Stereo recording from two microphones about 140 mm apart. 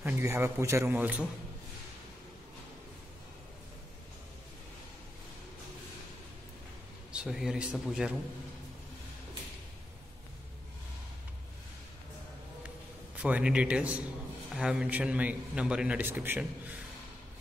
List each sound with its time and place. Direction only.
0.0 s a man's voice: 15° right (ahead or behind)
7.1 s a man's voice: 5° right (ahead or behind)
12.6 s a sound: 10° right (ahead or behind)
14.5 s a man's voice: 5° right (ahead or behind)